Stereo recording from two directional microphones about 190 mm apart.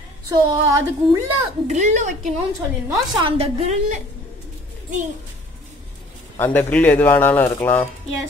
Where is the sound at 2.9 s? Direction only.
30° right (ahead or behind).